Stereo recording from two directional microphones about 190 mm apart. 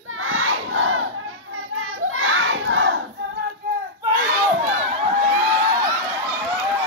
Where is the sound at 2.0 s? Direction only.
90° right.